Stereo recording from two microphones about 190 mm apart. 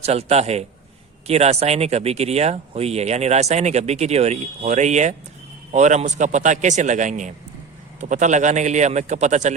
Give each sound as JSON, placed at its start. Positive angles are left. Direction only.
{"t": 0.0, "sound": "speech", "side_deg": -35}